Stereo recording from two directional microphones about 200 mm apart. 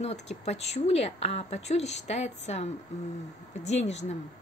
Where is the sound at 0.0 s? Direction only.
35° left (ahead or behind).